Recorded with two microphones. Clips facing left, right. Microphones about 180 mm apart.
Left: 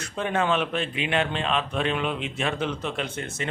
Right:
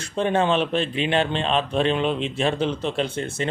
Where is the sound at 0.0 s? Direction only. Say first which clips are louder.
Right 5 dB; 30° right (ahead or behind).